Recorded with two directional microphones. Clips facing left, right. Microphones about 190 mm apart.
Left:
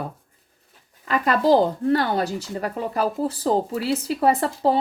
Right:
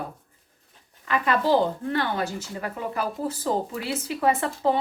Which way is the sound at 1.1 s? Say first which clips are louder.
Left 4 dB; 40° left (ahead or behind).